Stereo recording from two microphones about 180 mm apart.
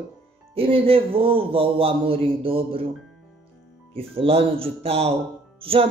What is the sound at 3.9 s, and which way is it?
Speech, 30° right (ahead or behind).